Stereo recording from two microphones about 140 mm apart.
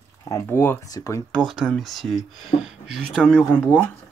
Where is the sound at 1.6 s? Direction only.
Centre (ahead or behind).